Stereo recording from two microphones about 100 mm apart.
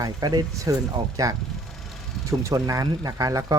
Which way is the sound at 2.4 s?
35° right (ahead or behind).